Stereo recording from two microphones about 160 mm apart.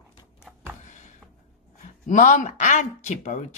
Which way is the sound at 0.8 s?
50° left (ahead or behind).